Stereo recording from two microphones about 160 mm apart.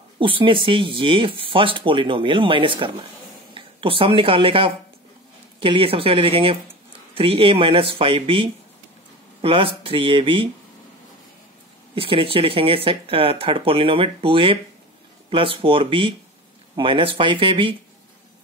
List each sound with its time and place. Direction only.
0.2 s speech: 30° right (ahead or behind)
11.9 s speech: 35° right (ahead or behind)